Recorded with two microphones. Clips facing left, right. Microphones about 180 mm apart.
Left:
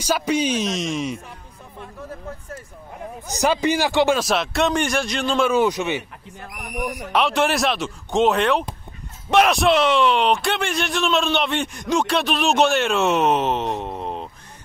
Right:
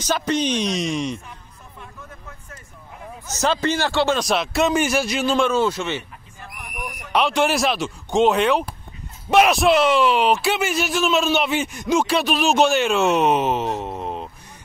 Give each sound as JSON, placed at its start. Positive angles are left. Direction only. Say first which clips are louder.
{"t": 0.0, "sound": "speech", "louder": "left 1 dB", "side_deg": 10}
{"t": 3.3, "sound": "speech", "louder": "left 1 dB", "side_deg": 15}
{"t": 4.2, "sound": "speech", "louder": "right 1 dB", "side_deg": 0}
{"t": 5.5, "sound": "speech", "louder": "left 2 dB", "side_deg": 15}
{"t": 6.5, "sound": "a sound", "louder": "left 7 dB", "side_deg": 20}
{"t": 7.1, "sound": "speech", "louder": "right 1 dB", "side_deg": 0}